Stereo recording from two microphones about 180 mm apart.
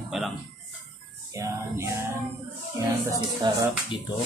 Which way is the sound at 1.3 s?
15° right (ahead or behind).